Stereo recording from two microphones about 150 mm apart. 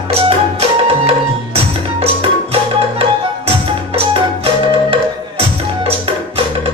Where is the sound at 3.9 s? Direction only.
40° right (ahead or behind).